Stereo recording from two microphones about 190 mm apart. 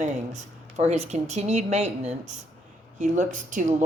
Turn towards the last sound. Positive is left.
turn(degrees=-40)  # may be behind; listen again after turning